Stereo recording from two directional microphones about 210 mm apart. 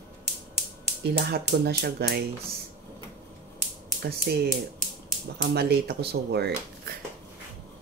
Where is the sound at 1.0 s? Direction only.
50° right (ahead or behind).